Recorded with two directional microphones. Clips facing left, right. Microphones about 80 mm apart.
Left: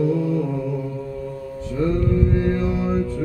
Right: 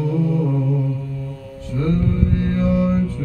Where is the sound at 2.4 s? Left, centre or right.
Left.